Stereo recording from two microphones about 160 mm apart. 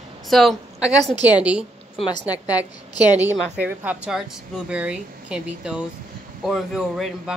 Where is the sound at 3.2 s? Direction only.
10° right (ahead or behind).